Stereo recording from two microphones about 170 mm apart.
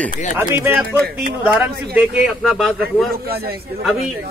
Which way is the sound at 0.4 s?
15° right (ahead or behind).